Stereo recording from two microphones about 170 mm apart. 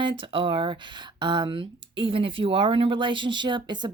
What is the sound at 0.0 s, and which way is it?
Speech, 30° right (ahead or behind).